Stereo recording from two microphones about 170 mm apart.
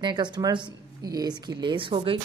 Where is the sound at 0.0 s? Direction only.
25° right (ahead or behind).